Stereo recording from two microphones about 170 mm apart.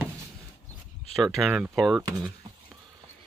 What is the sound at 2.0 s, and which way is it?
Speech, 20° right (ahead or behind).